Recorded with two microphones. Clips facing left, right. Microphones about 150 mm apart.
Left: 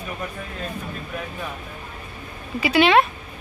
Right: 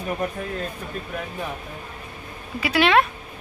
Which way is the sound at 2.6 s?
Centre (ahead or behind).